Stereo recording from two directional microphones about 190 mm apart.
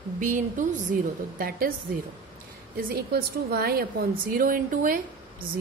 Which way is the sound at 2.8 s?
50° right (ahead or behind).